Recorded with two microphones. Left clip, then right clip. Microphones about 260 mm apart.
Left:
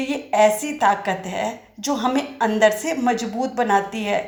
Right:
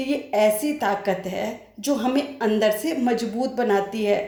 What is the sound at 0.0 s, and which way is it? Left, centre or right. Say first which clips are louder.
Speech: left 3 dB; left.